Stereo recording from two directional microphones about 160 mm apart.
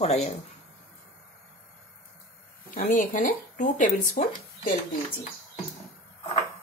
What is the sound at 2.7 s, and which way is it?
Speech, 55° left (ahead or behind).